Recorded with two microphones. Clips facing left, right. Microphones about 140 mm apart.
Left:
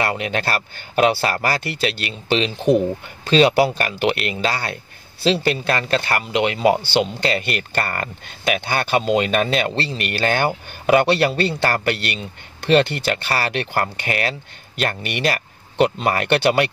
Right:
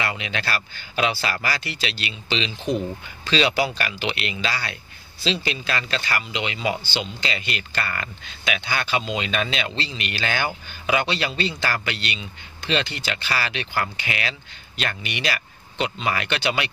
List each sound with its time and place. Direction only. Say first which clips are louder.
0.0 s speech: left 6 dB; 50° left (ahead or behind)